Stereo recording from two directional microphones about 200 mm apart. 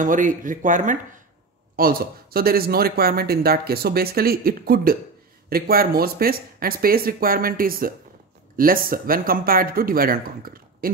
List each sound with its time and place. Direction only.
0.0 s speech: 40° right (ahead or behind)